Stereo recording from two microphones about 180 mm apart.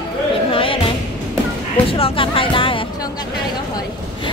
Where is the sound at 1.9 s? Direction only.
30° left (ahead or behind).